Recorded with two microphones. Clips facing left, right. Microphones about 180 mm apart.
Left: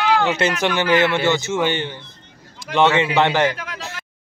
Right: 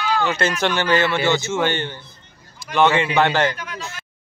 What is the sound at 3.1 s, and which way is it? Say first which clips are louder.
Speech: left 1 dB; 20° left (ahead or behind).